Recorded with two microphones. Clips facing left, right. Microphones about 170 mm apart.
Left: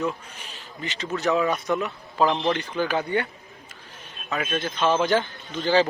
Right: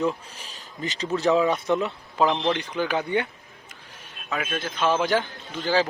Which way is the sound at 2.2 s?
Centre (ahead or behind).